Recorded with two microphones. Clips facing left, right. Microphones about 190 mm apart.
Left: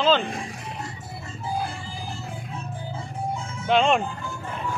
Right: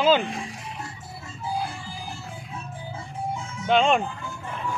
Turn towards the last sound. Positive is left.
turn(degrees=0)  # may be behind; listen again after turning